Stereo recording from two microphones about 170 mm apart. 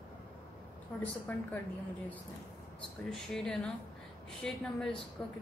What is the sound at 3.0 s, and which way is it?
Speech, 5° left (ahead or behind).